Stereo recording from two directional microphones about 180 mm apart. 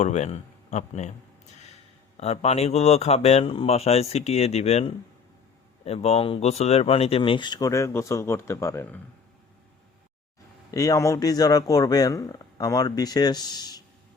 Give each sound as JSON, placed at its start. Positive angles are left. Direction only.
{"t": 0.0, "sound": "speech", "side_deg": 40}
{"t": 2.1, "sound": "speech", "side_deg": 35}
{"t": 10.7, "sound": "speech", "side_deg": 20}